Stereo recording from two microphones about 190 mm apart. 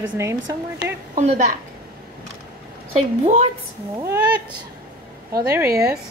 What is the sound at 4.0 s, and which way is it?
Speech, 15° right (ahead or behind).